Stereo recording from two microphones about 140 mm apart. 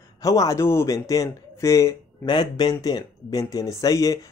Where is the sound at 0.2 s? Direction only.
25° left (ahead or behind).